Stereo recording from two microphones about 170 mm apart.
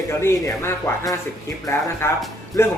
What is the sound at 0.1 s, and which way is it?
A man's voice, 15° left (ahead or behind).